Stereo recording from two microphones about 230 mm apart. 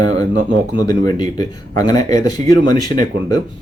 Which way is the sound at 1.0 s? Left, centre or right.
Centre.